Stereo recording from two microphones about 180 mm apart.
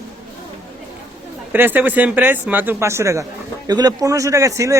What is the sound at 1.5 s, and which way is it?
A man's voice, 10° right (ahead or behind).